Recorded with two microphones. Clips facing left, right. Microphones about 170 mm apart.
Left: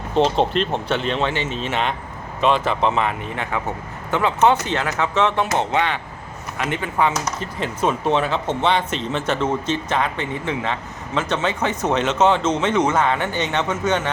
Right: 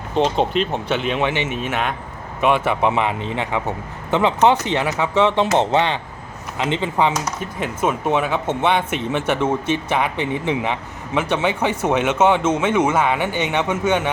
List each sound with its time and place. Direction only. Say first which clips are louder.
0.1 s a man's voice: even; centre (ahead or behind)
5.5 s a man's voice: right 3 dB; 25° right (ahead or behind); by 14.1 s 10° right (ahead or behind)